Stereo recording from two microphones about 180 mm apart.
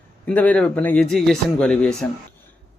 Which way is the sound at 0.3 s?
10° left (ahead or behind).